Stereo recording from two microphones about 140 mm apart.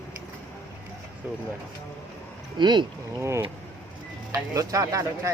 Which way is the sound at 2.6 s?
35° right (ahead or behind).